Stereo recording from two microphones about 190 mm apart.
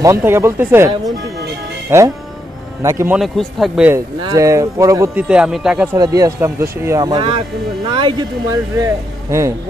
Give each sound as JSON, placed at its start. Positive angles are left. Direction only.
{"t": 0.0, "sound": "speech", "side_deg": -15}
{"t": 3.2, "sound": "speech", "side_deg": 0}
{"t": 3.9, "sound": "speech", "side_deg": -15}
{"t": 5.3, "sound": "speech", "side_deg": -5}
{"t": 5.9, "sound": "speech", "side_deg": -20}